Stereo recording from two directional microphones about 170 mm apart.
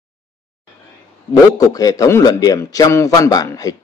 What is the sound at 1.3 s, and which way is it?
A man's voice, 20° left (ahead or behind).